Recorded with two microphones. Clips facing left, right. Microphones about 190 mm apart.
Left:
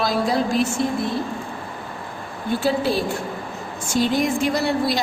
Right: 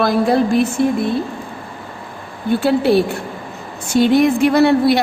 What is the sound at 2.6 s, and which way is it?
A woman's voice, 65° right (ahead or behind).